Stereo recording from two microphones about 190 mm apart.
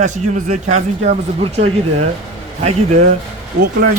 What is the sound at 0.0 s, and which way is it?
Speech, 40° right (ahead or behind).